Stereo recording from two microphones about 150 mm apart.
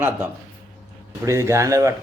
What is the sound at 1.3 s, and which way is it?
Speech, 20° right (ahead or behind).